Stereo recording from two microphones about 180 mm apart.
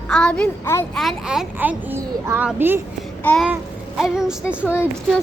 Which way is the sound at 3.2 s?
5° left (ahead or behind).